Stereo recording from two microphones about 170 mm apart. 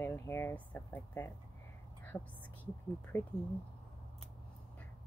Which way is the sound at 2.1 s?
25° left (ahead or behind).